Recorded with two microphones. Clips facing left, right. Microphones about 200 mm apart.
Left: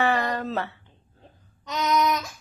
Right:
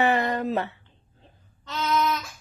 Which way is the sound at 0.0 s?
20° right (ahead or behind).